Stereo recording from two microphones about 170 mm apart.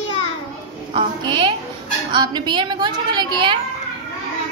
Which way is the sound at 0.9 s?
25° right (ahead or behind).